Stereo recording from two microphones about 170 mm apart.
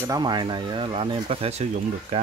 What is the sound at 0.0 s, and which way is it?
Speech, 25° right (ahead or behind).